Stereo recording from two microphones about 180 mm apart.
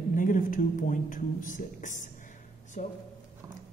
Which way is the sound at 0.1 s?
45° left (ahead or behind).